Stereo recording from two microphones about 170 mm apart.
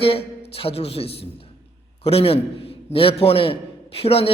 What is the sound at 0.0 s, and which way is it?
A woman's voice, 35° left (ahead or behind).